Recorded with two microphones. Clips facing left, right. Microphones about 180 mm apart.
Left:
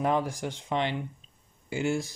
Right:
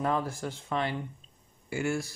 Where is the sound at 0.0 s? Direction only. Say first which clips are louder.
Left 3 dB; 15° left (ahead or behind).